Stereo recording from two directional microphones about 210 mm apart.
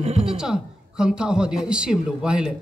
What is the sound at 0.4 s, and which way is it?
A woman's voice, 5° right (ahead or behind).